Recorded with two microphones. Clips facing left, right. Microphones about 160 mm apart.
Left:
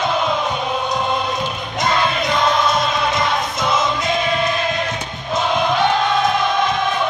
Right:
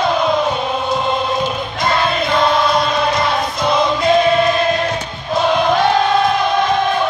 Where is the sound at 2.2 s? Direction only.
20° left (ahead or behind).